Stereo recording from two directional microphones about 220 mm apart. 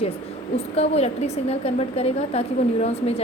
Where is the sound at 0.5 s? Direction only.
30° left (ahead or behind).